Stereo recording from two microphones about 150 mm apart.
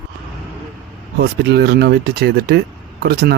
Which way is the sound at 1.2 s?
90° right.